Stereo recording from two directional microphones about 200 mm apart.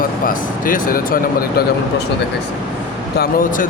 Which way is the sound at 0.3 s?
45° left (ahead or behind).